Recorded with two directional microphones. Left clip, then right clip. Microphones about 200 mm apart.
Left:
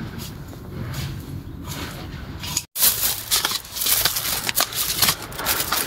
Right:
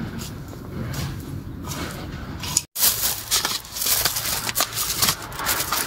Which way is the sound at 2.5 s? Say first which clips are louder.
Even; centre (ahead or behind).